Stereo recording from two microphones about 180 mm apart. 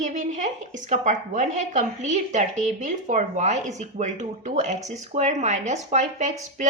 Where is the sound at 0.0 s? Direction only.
45° right (ahead or behind).